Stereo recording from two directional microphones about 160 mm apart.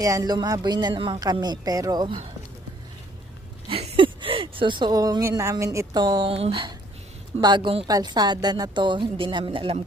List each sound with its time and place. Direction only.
0.0 s speech: 20° right (ahead or behind)
3.7 s speech: 35° right (ahead or behind)